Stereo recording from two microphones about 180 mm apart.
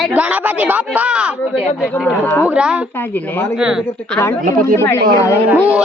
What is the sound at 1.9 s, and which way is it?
Speech, 10° left (ahead or behind).